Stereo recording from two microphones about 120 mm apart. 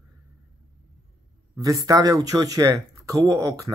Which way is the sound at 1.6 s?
30° right (ahead or behind).